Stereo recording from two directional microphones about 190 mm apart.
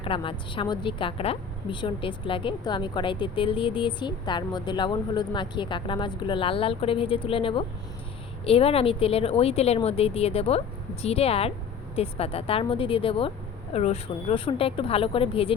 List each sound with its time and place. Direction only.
0.0 s a woman's voice: 30° left (ahead or behind)